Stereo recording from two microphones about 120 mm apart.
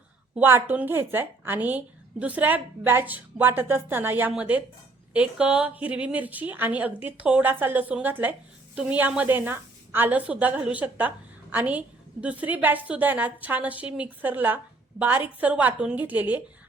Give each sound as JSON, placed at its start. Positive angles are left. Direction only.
{"t": 0.3, "sound": "a woman's voice", "side_deg": -15}